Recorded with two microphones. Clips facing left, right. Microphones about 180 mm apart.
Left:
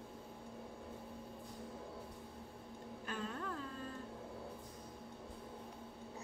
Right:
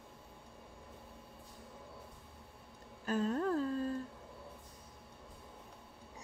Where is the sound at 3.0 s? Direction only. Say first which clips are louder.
Right 11 dB; 40° right (ahead or behind).